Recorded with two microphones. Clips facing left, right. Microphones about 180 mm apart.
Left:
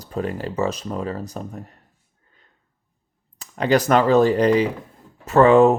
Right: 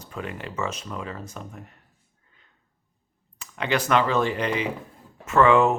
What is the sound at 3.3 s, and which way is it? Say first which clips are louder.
Speech: left 7 dB; 40° left (ahead or behind).